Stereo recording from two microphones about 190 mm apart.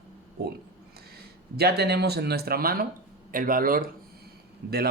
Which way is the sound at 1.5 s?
55° right (ahead or behind).